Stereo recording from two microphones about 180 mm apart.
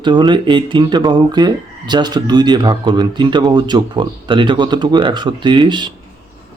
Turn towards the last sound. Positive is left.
turn(degrees=-25)  # may be behind; listen again after turning